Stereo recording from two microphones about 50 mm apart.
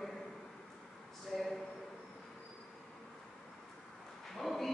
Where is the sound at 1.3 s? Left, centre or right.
Centre.